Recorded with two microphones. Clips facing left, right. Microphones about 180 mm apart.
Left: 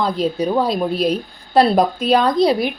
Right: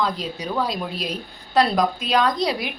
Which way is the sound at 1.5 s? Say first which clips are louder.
Left 5 dB; 30° left (ahead or behind).